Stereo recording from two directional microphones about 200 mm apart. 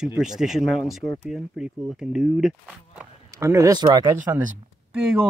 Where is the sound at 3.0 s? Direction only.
15° right (ahead or behind).